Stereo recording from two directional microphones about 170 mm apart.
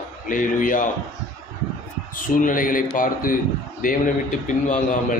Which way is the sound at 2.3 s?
55° left (ahead or behind).